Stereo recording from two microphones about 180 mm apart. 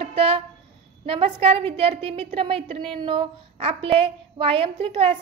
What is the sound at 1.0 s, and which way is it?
A woman's voice, 30° right (ahead or behind).